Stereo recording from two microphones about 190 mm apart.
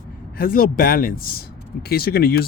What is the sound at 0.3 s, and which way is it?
Speech, 50° left (ahead or behind).